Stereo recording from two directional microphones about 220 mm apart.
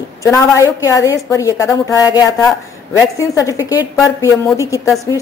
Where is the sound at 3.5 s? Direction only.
10° right (ahead or behind).